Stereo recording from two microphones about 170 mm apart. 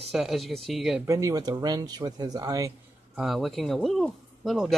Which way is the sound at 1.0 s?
15° right (ahead or behind).